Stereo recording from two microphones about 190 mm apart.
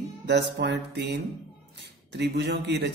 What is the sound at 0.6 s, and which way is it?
A man's voice, 60° right (ahead or behind).